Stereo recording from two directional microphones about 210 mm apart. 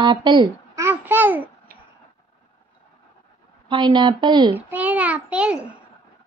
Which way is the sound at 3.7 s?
20° right (ahead or behind).